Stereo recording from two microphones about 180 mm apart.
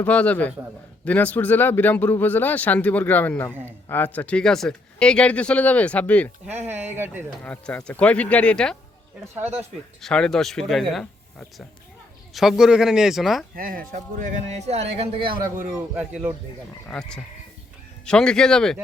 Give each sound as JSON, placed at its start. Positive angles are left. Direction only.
{"t": 0.0, "sound": "speech", "side_deg": 10}
{"t": 6.8, "sound": "speech", "side_deg": -10}
{"t": 7.4, "sound": "speech", "side_deg": 5}
{"t": 9.4, "sound": "speech", "side_deg": -10}
{"t": 10.0, "sound": "speech", "side_deg": 5}
{"t": 13.6, "sound": "a man's voice", "side_deg": -50}
{"t": 15.5, "sound": "speech", "side_deg": -5}
{"t": 16.9, "sound": "speech", "side_deg": 5}